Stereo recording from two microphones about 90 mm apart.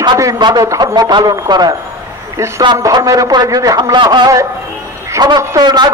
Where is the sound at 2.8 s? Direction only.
40° right (ahead or behind); by 4.3 s 60° right (ahead or behind).